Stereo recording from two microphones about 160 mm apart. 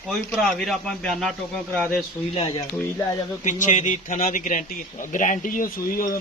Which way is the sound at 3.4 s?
50° left (ahead or behind).